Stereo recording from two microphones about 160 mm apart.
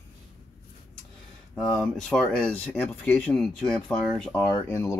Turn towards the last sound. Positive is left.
turn(degrees=15)  # may be behind; listen again after turning